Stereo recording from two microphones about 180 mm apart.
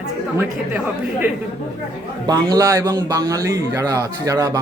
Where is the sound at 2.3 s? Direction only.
20° right (ahead or behind).